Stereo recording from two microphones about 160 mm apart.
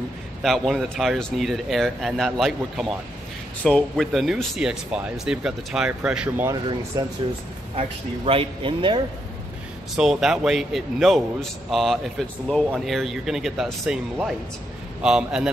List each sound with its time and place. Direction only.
0.4 s speech: centre (ahead or behind)
6.5 s speech: 25° right (ahead or behind)
8.3 s speech: 35° right (ahead or behind)
9.9 s speech: 5° right (ahead or behind)